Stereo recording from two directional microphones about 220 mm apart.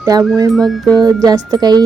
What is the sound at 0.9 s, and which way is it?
Speech, 15° right (ahead or behind).